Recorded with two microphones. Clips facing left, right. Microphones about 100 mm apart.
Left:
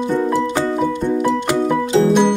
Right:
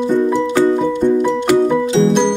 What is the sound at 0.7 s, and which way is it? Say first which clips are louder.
Music: right 4 dB; 5° left (ahead or behind).